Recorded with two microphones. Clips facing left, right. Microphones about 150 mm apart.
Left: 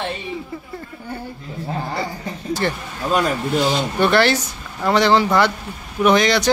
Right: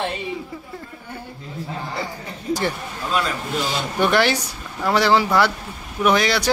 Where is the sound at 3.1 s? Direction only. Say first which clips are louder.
Left 5 dB; 45° left (ahead or behind).